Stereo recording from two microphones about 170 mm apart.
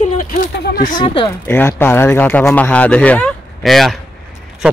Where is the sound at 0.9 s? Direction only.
30° left (ahead or behind).